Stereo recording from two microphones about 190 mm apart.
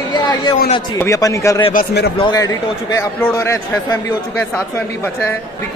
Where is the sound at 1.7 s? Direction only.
55° left (ahead or behind).